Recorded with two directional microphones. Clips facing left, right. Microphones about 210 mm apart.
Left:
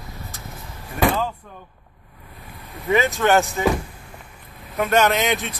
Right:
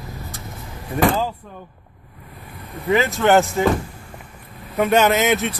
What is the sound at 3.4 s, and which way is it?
Speech, 5° left (ahead or behind).